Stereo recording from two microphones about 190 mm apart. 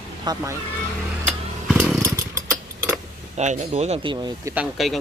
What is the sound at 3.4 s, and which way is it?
Speech, 35° right (ahead or behind).